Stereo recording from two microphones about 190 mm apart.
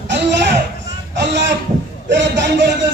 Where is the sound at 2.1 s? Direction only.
70° right (ahead or behind).